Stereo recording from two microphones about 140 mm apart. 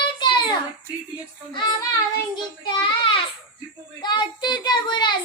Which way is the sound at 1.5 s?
35° left (ahead or behind).